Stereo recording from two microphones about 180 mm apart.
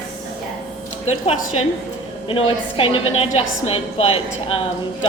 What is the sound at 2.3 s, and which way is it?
A woman's voice, 30° left (ahead or behind).